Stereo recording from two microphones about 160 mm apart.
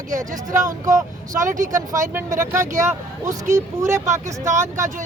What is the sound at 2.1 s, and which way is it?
Speech, 15° right (ahead or behind).